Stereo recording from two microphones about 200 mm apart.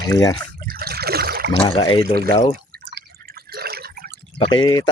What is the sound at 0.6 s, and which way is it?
Trickle, 50° right (ahead or behind).